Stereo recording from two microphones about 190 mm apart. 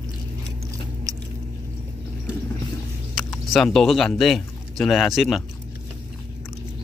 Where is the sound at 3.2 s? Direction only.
Centre (ahead or behind).